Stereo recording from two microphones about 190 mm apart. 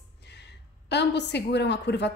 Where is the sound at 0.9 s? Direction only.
65° left (ahead or behind).